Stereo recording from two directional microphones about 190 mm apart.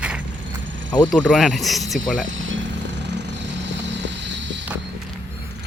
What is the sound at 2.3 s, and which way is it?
Vehicle, 85° right.